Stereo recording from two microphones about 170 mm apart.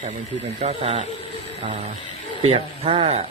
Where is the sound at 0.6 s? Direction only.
40° right (ahead or behind).